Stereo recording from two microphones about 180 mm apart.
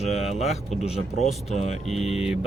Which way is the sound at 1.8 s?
Centre (ahead or behind).